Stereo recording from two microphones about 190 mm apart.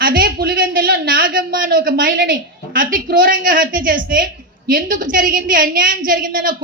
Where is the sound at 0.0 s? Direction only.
50° right (ahead or behind).